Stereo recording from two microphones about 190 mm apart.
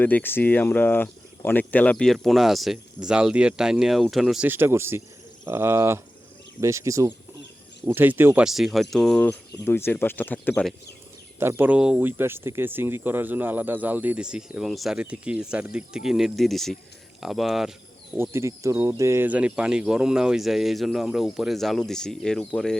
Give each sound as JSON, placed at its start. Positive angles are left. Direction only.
{"t": 0.0, "sound": "speech", "side_deg": 10}
{"t": 11.3, "sound": "speech", "side_deg": -10}
{"t": 18.2, "sound": "speech", "side_deg": -15}